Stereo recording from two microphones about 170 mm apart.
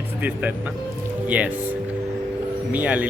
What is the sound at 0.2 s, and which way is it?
Speech, 10° right (ahead or behind).